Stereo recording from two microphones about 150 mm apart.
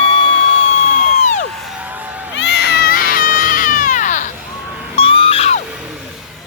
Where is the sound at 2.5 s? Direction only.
90° left; by 4.2 s 60° left (ahead or behind).